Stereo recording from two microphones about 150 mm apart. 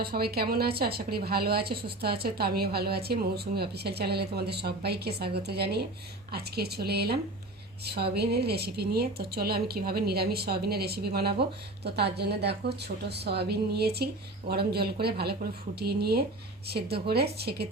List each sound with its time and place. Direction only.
0.0 s a woman's voice: 90° right